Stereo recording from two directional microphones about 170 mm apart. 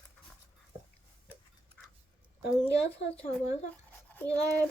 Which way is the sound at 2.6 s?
35° left (ahead or behind).